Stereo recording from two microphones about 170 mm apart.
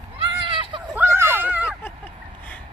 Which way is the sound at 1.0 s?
10° right (ahead or behind).